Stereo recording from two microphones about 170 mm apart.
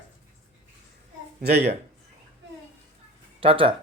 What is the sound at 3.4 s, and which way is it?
Speech, 30° right (ahead or behind).